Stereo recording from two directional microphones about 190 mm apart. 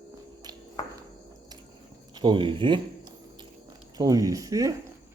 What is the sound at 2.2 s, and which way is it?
Speech, 25° right (ahead or behind).